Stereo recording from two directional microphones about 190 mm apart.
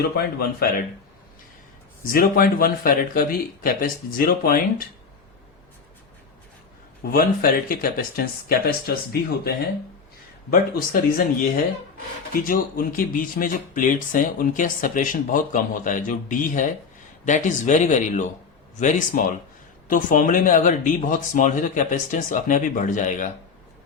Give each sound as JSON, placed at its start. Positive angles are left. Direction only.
{"t": 0.2, "sound": "speech", "side_deg": 55}
{"t": 2.0, "sound": "speech", "side_deg": 50}
{"t": 7.0, "sound": "speech", "side_deg": 50}
{"t": 10.5, "sound": "speech", "side_deg": 50}